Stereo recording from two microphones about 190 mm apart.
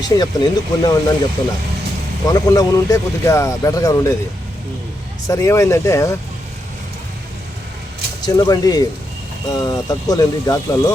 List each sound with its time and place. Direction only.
0.0 s speech: 20° left (ahead or behind)
5.3 s speech: 15° left (ahead or behind)
8.2 s speech: 20° left (ahead or behind)